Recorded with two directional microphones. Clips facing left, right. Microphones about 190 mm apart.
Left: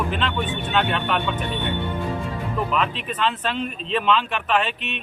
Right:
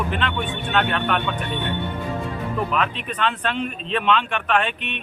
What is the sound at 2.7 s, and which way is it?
A man's voice, centre (ahead or behind).